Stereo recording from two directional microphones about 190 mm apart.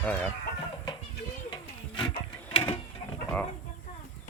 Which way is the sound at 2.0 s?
25° left (ahead or behind).